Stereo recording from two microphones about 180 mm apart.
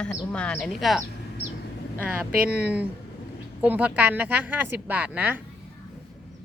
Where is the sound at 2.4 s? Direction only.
10° right (ahead or behind).